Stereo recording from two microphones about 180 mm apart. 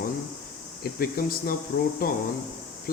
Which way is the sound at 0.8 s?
55° left (ahead or behind).